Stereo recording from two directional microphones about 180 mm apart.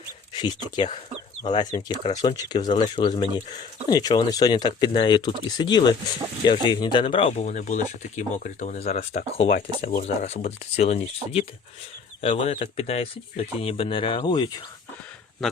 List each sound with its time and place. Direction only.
0.3 s speech: 25° left (ahead or behind)